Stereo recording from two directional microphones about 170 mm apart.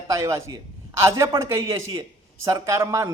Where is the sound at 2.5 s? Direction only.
20° right (ahead or behind).